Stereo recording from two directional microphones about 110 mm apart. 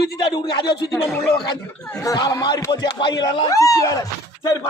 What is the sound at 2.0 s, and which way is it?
Speech, 30° left (ahead or behind).